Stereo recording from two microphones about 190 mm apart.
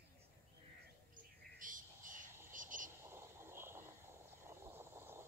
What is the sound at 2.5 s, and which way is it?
Cricket, 45° right (ahead or behind).